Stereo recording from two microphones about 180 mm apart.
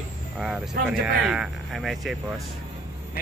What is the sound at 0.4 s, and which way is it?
A man's voice, centre (ahead or behind).